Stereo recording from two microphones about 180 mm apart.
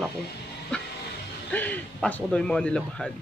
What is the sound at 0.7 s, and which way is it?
Music, 5° left (ahead or behind).